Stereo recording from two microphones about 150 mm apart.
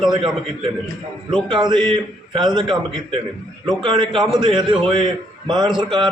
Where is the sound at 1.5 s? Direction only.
30° right (ahead or behind).